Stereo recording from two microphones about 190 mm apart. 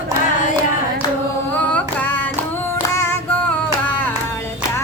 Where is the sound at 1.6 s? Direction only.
10° left (ahead or behind).